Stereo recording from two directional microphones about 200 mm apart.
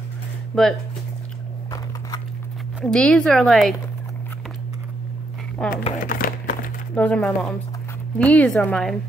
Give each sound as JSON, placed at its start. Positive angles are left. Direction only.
{"t": 0.5, "sound": "speech", "side_deg": 5}
{"t": 1.7, "sound": "a sound", "side_deg": 20}
{"t": 2.8, "sound": "speech", "side_deg": 5}
{"t": 5.6, "sound": "speech", "side_deg": 5}
{"t": 6.0, "sound": "a sound", "side_deg": 45}
{"t": 7.0, "sound": "a woman's voice", "side_deg": 5}